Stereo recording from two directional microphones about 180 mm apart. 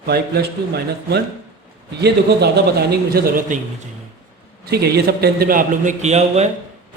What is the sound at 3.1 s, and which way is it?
Speech, 55° right (ahead or behind).